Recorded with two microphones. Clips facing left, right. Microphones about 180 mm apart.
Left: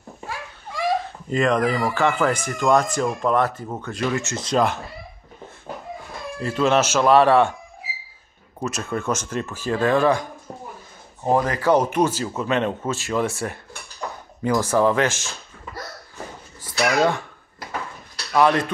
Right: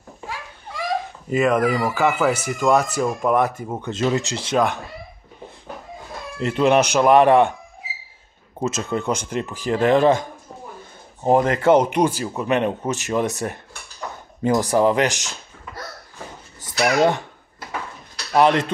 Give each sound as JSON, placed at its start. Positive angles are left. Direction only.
{"t": 1.3, "sound": "speech", "side_deg": -5}
{"t": 3.9, "sound": "speech", "side_deg": -25}
{"t": 4.5, "sound": "speech", "side_deg": 0}
{"t": 6.4, "sound": "speech", "side_deg": -15}
{"t": 8.5, "sound": "speech", "side_deg": -20}
{"t": 11.2, "sound": "speech", "side_deg": -25}
{"t": 16.8, "sound": "speech", "side_deg": -20}
{"t": 18.3, "sound": "speech", "side_deg": -25}